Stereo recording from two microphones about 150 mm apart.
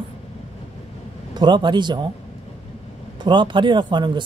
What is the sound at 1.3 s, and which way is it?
Speech, 30° right (ahead or behind).